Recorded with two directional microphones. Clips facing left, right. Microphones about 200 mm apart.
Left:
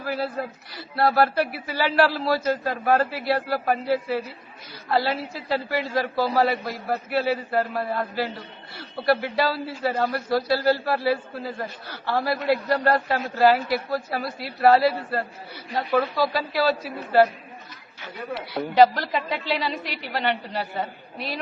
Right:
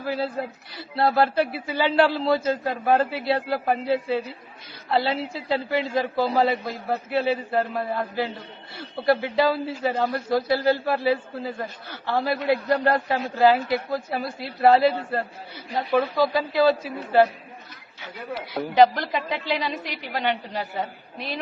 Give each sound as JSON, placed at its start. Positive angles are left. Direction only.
{"t": 0.0, "sound": "a man's voice", "side_deg": -25}
{"t": 15.7, "sound": "a man's voice", "side_deg": -5}
{"t": 18.3, "sound": "a woman's voice", "side_deg": 0}
{"t": 18.7, "sound": "a man's voice", "side_deg": -20}